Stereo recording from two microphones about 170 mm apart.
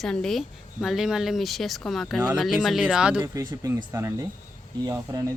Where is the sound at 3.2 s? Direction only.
15° right (ahead or behind).